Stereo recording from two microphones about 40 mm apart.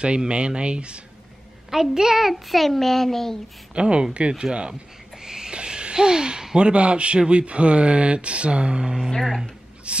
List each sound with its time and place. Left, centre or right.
0.0 s speech: right
1.7 s a child's voice: centre
3.7 s speech: right
9.9 s a sound: right